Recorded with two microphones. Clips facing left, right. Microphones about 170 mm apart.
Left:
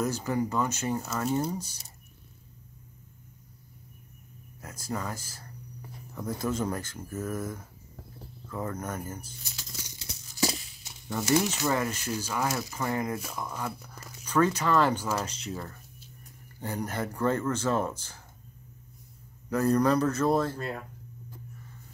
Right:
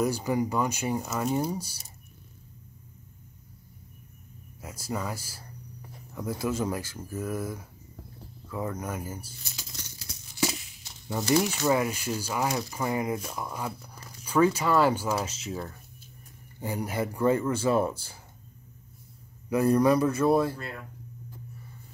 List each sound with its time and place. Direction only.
0.0 s speech: 10° right (ahead or behind)
4.6 s speech: 10° right (ahead or behind)
9.7 s crumpling: 5° left (ahead or behind)
10.3 s a sound: 35° left (ahead or behind)
11.1 s speech: 15° right (ahead or behind)
19.5 s speech: 10° right (ahead or behind)